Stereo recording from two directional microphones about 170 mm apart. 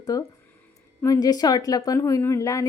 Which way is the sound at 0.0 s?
20° left (ahead or behind).